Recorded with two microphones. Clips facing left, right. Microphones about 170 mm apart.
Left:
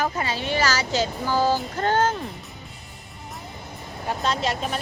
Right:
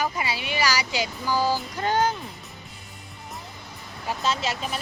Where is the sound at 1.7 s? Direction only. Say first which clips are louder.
Left 2 dB; 10° right (ahead or behind).